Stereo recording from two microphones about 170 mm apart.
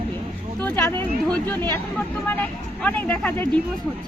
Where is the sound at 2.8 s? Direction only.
5° left (ahead or behind).